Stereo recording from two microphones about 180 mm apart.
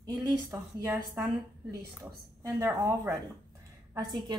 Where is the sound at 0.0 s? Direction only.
20° right (ahead or behind).